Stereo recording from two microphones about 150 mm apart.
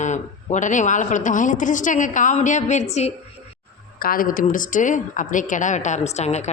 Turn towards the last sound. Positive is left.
turn(degrees=50)  # may be behind; listen again after turning